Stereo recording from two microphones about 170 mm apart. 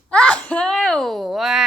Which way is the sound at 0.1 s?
5° left (ahead or behind).